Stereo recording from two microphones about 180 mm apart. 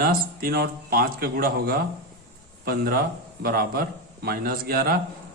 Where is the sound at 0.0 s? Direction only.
55° right (ahead or behind).